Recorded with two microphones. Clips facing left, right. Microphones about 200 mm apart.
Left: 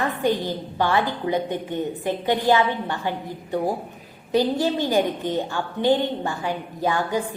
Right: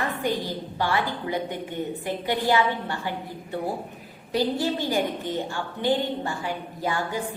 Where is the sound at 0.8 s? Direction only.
20° left (ahead or behind).